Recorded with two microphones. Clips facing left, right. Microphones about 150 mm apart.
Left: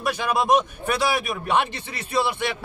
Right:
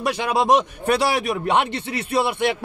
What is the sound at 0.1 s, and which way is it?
A man's voice, 85° right.